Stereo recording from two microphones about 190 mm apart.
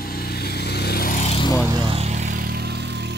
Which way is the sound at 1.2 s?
30° left (ahead or behind).